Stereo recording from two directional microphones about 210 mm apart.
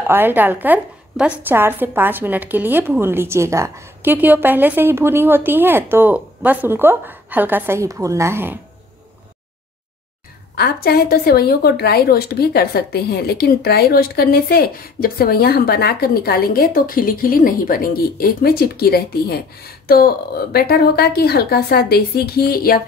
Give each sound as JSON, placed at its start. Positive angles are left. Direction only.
{"t": 0.0, "sound": "a woman's voice", "side_deg": -10}
{"t": 10.5, "sound": "a woman's voice", "side_deg": 50}